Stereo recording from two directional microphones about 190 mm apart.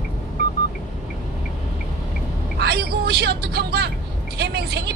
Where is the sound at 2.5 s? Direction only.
55° right (ahead or behind).